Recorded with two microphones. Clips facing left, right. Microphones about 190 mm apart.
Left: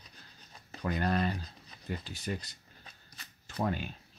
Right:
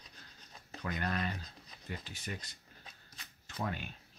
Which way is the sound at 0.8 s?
35° left (ahead or behind).